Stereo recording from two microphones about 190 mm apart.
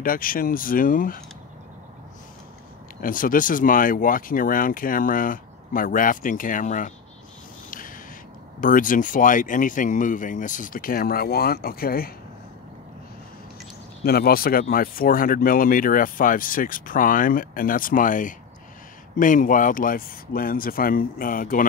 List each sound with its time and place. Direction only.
0.0 s speech: 50° left (ahead or behind)
3.0 s speech: 45° left (ahead or behind)
8.5 s speech: 45° left (ahead or behind)
14.0 s speech: 55° left (ahead or behind)